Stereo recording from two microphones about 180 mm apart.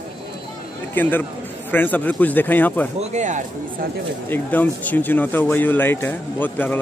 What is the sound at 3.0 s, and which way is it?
Speech, 40° right (ahead or behind).